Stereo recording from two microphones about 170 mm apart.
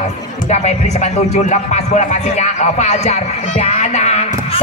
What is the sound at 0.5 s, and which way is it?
Speech, 40° left (ahead or behind).